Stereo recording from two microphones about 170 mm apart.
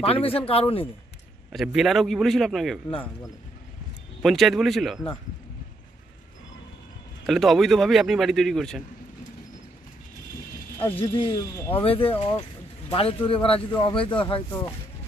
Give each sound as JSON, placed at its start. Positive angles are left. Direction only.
{"t": 0.0, "sound": "speech", "side_deg": 35}
{"t": 1.5, "sound": "speech", "side_deg": 0}
{"t": 4.2, "sound": "speech", "side_deg": 0}
{"t": 7.2, "sound": "speech", "side_deg": 0}
{"t": 11.0, "sound": "speech", "side_deg": 30}
{"t": 11.5, "sound": "speech", "side_deg": 15}
{"t": 11.8, "sound": "speech", "side_deg": 35}